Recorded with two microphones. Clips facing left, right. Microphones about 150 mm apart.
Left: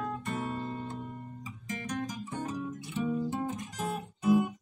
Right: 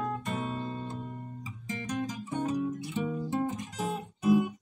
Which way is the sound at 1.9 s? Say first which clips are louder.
Right 2 dB; 20° right (ahead or behind).